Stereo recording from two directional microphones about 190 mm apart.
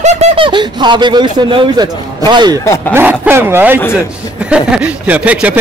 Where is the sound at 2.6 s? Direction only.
15° left (ahead or behind).